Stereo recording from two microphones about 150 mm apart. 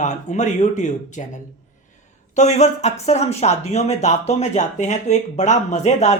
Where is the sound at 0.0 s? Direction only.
55° left (ahead or behind).